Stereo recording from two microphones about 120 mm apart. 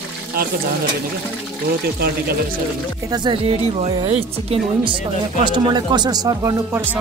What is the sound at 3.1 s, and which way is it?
Speech, 40° right (ahead or behind).